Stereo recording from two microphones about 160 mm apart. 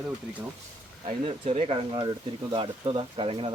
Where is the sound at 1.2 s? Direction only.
40° right (ahead or behind).